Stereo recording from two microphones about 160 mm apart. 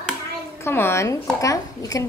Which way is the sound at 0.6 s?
15° left (ahead or behind).